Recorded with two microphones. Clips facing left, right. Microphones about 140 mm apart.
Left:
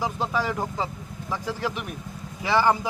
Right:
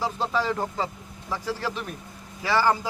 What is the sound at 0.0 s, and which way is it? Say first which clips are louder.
Speech: even; 15° left (ahead or behind).